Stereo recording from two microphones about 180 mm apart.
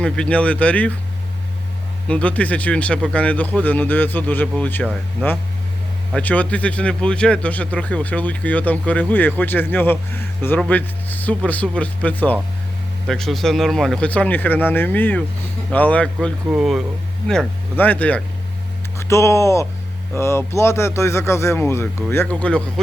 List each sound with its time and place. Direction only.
0.0 s speech: 5° left (ahead or behind)
2.0 s speech: 5° left (ahead or behind)
6.1 s speech: 10° left (ahead or behind)
16.5 s speech: 5° right (ahead or behind)